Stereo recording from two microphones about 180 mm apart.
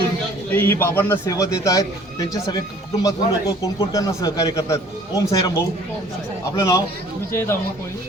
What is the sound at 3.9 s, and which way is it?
A man's voice, 20° left (ahead or behind).